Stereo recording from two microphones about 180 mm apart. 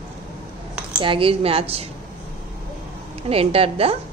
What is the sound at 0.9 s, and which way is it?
Speech, 30° right (ahead or behind).